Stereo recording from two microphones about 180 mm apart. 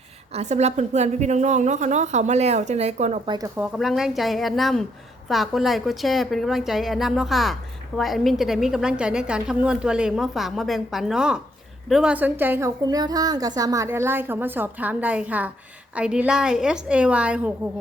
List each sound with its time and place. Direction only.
0.3 s a woman's voice: 40° right (ahead or behind)
3.2 s a woman's voice: 20° right (ahead or behind)